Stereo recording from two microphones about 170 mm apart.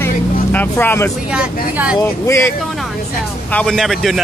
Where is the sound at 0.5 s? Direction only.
10° left (ahead or behind).